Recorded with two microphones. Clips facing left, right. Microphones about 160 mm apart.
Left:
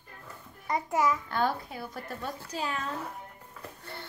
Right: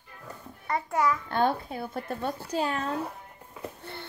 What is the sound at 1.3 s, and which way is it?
Speech, 25° right (ahead or behind).